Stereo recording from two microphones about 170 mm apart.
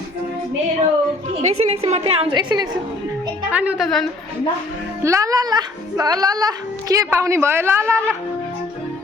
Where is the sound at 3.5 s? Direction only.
10° right (ahead or behind).